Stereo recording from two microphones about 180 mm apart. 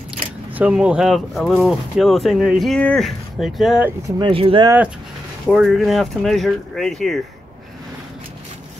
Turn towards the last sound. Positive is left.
turn(degrees=0)  # may be behind; listen again after turning